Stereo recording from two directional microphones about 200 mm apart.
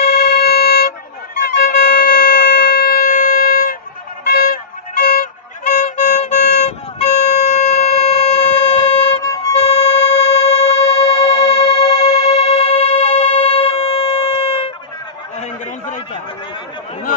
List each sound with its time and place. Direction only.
0.0 s music: 50° left (ahead or behind)
1.7 s a sound: 50° left (ahead or behind)
4.2 s vehicle: 50° left (ahead or behind)
5.0 s music: 40° left (ahead or behind)